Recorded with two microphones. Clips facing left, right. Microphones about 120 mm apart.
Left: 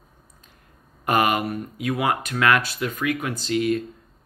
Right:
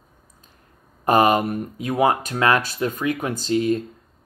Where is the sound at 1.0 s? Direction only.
30° right (ahead or behind).